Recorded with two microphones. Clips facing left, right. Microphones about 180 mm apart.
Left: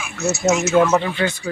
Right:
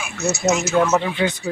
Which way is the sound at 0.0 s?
5° left (ahead or behind).